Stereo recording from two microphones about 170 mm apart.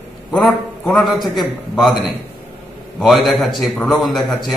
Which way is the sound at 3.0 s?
Centre (ahead or behind).